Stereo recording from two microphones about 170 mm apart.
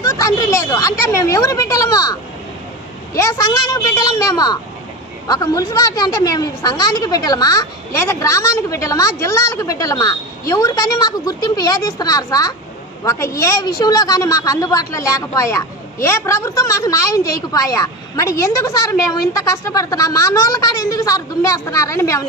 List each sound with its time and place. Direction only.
0.0 s a woman's voice: 20° left (ahead or behind)
3.2 s a woman's voice: 20° left (ahead or behind)